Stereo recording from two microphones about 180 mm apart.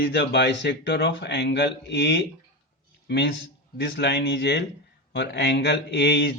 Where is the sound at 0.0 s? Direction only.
65° left (ahead or behind).